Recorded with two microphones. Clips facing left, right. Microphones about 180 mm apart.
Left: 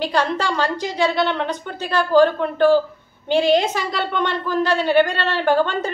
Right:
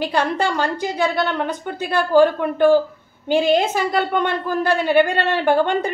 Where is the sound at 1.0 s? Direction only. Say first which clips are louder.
Left 2 dB; 10° right (ahead or behind).